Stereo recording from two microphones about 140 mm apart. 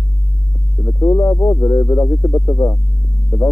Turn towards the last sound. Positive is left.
turn(degrees=15)  # may be behind; listen again after turning